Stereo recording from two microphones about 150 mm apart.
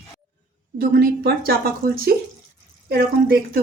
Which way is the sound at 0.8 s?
85° right.